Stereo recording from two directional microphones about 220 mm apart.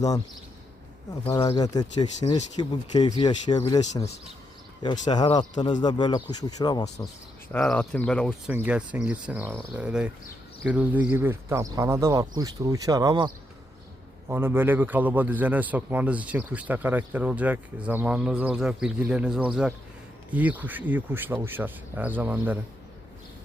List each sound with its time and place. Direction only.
1.2 s speech: 20° left (ahead or behind)
4.8 s speech: 20° left (ahead or behind)
7.5 s a man's voice: 5° left (ahead or behind)